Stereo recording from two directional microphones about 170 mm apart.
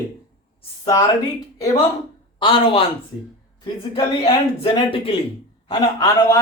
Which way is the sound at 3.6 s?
20° left (ahead or behind).